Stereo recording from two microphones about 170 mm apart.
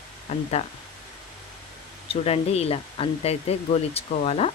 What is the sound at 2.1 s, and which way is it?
Speech, 35° left (ahead or behind).